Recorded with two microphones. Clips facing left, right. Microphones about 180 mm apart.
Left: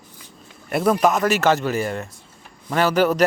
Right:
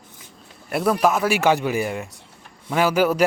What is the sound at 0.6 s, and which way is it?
Speech, centre (ahead or behind).